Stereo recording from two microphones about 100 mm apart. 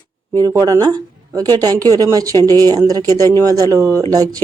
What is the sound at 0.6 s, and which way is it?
Speech, 40° right (ahead or behind).